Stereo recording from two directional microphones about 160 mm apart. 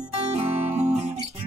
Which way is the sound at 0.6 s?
45° right (ahead or behind).